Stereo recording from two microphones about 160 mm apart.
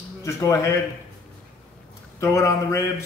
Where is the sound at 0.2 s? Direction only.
20° left (ahead or behind).